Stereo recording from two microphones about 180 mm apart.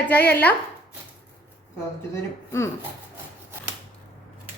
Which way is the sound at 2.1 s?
15° left (ahead or behind).